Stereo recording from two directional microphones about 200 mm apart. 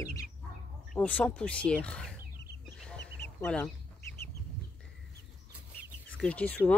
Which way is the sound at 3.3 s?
5° left (ahead or behind).